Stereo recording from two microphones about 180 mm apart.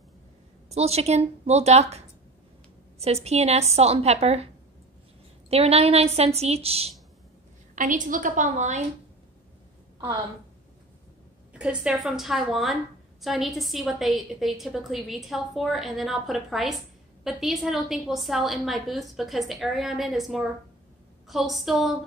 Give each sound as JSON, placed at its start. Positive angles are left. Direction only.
{"t": 0.7, "sound": "a woman's voice", "side_deg": -35}
{"t": 5.5, "sound": "a woman's voice", "side_deg": -35}
{"t": 7.7, "sound": "a woman's voice", "side_deg": -45}
{"t": 11.5, "sound": "a woman's voice", "side_deg": -5}